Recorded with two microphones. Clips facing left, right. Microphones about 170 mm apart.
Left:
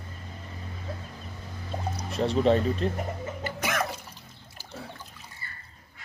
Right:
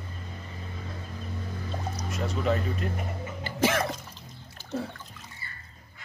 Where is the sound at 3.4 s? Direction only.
30° right (ahead or behind).